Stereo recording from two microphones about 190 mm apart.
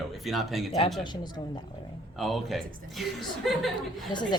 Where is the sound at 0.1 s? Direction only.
Centre (ahead or behind).